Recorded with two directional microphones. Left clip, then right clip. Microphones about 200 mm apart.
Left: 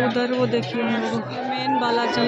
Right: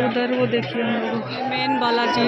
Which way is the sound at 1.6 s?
5° right (ahead or behind).